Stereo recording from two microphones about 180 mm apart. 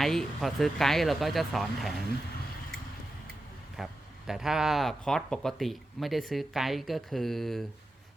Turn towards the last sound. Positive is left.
turn(degrees=0)  # may be behind; listen again after turning